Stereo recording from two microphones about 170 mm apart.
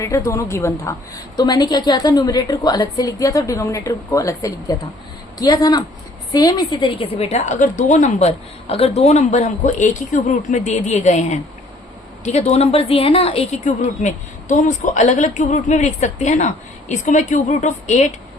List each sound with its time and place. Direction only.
0.0 s a woman's voice: 15° left (ahead or behind); by 18.1 s 45° left (ahead or behind)